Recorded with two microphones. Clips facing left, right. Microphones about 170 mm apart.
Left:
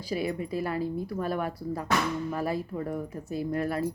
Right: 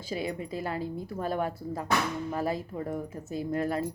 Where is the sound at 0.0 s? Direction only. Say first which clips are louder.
Left 3 dB; 25° right (ahead or behind).